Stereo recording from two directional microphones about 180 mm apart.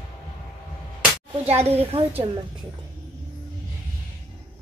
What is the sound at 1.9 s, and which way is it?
Speech, 30° right (ahead or behind).